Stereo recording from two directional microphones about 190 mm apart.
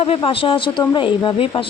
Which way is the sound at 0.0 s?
30° left (ahead or behind).